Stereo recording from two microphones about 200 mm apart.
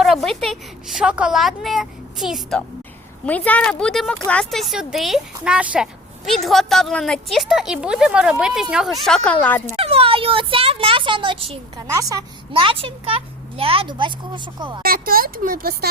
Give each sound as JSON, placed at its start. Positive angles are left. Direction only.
{"t": 0.0, "sound": "speech", "side_deg": 0}
{"t": 9.7, "sound": "a child's voice", "side_deg": -30}
{"t": 14.8, "sound": "speech", "side_deg": -45}